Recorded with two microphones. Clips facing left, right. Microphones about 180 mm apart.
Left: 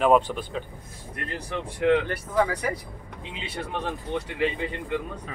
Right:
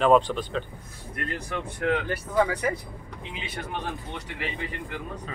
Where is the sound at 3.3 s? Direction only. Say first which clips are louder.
Left 2 dB; 30° left (ahead or behind).